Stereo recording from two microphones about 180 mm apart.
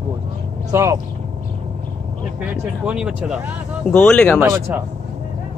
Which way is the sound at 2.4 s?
5° right (ahead or behind).